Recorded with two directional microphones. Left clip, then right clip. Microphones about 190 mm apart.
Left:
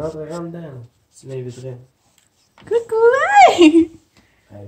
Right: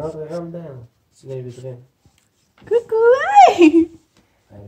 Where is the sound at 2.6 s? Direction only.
5° left (ahead or behind).